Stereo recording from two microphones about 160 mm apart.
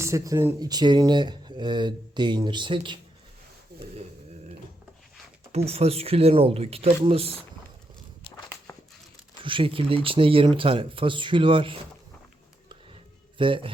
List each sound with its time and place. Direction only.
0.0 s speech: 15° right (ahead or behind)
5.5 s speech: 40° right (ahead or behind)
9.4 s speech: 30° right (ahead or behind)
13.4 s speech: 30° right (ahead or behind)